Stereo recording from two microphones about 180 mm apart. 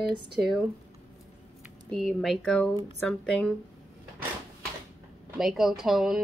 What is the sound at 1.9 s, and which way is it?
Speech, centre (ahead or behind).